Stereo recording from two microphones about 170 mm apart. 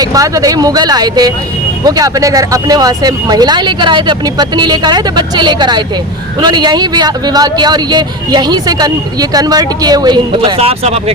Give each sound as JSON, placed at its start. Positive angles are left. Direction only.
{"t": 0.0, "sound": "speech", "side_deg": -20}
{"t": 10.6, "sound": "speech", "side_deg": -35}